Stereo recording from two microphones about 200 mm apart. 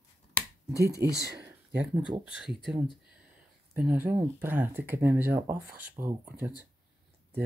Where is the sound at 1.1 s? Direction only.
55° right (ahead or behind).